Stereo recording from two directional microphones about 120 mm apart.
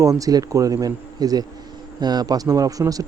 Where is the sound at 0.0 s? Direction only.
30° right (ahead or behind).